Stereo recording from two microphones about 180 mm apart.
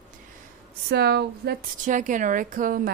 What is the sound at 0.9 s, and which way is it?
Speech, 65° right (ahead or behind).